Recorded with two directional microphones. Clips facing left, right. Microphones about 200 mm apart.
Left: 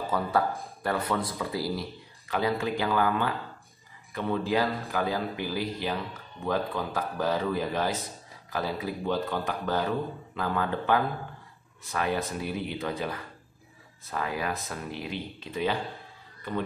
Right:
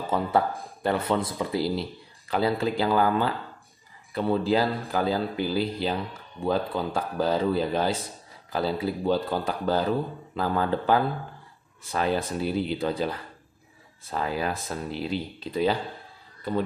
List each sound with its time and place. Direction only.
0.1 s speech: 25° right (ahead or behind)
14.1 s speech: 30° right (ahead or behind)